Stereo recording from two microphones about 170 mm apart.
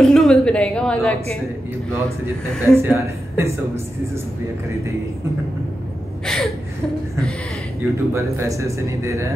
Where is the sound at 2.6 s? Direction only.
15° right (ahead or behind).